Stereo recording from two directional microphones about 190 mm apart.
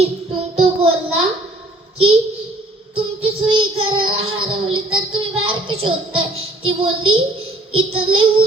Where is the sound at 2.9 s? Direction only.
30° right (ahead or behind).